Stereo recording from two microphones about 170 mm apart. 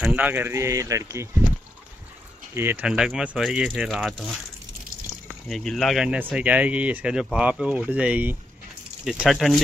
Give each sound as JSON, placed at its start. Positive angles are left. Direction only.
{"t": 0.0, "sound": "speech", "side_deg": -10}
{"t": 2.5, "sound": "speech", "side_deg": -10}
{"t": 5.3, "sound": "speech", "side_deg": 0}